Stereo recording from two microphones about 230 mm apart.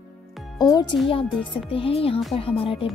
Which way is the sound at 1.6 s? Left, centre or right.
Left.